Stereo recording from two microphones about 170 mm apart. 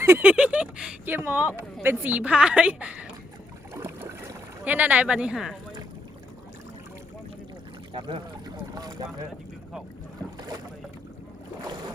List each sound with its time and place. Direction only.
0.0 s speech: 10° right (ahead or behind)
3.8 s boat: 15° right (ahead or behind)
7.9 s speech: 30° right (ahead or behind)